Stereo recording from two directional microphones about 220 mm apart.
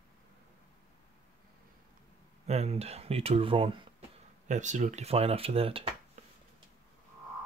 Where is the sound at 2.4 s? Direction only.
30° right (ahead or behind).